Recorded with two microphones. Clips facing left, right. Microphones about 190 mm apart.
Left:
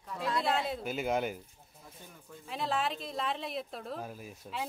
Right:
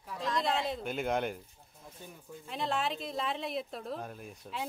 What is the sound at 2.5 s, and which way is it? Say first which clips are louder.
Speech: even; centre (ahead or behind).